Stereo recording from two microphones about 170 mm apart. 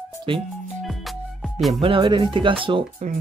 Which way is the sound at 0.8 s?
Centre (ahead or behind).